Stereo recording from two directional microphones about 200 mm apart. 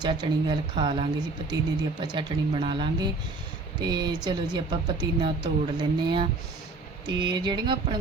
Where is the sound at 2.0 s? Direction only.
20° right (ahead or behind).